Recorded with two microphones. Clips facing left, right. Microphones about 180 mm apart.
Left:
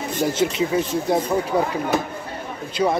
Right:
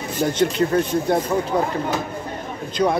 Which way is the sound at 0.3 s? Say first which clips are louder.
Right 3 dB; 5° left (ahead or behind).